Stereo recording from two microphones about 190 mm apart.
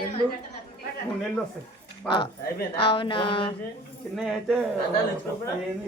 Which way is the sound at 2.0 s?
25° left (ahead or behind).